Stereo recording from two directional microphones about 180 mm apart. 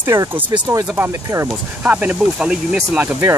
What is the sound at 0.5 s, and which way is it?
Speech, 20° right (ahead or behind).